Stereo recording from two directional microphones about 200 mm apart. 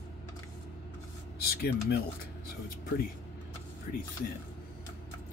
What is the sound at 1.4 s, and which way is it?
Speech, 50° left (ahead or behind).